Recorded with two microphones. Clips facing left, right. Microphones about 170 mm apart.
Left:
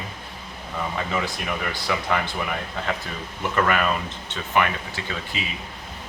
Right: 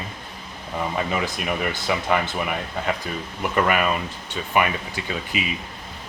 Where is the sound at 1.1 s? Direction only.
20° right (ahead or behind).